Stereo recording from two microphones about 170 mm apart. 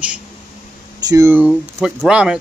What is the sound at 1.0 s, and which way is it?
Speech, 15° right (ahead or behind).